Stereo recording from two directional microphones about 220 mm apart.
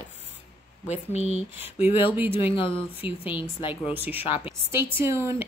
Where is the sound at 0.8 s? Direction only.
30° left (ahead or behind).